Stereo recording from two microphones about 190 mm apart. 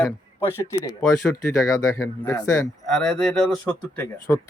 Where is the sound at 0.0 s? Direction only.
10° left (ahead or behind).